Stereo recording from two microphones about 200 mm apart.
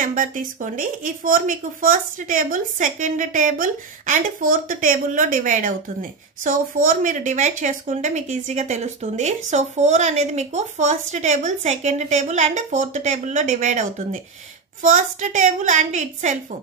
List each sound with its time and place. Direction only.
0.0 s speech: 40° right (ahead or behind)